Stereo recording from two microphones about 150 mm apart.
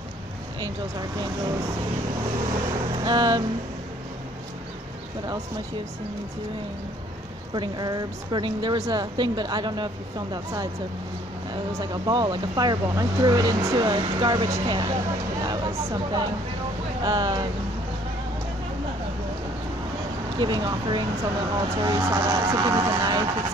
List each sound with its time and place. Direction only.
3.0 s vehicle: 25° right (ahead or behind)
7.5 s speech: 30° right (ahead or behind)
11.8 s speech: 30° right (ahead or behind)
15.4 s a sound: 25° right (ahead or behind)
17.0 s speech: 25° right (ahead or behind)
20.3 s speech: 30° right (ahead or behind)